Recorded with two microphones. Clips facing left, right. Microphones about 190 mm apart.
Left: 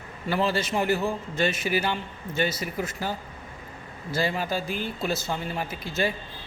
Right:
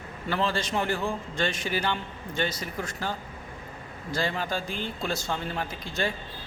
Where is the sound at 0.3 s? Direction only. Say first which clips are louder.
Left 3 dB; 10° left (ahead or behind).